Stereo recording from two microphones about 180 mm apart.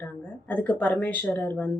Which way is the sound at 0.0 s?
10° left (ahead or behind).